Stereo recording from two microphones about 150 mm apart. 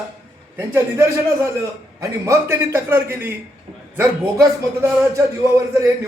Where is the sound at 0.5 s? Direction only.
20° right (ahead or behind).